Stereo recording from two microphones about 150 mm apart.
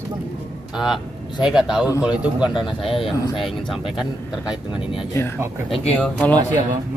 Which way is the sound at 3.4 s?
Centre (ahead or behind).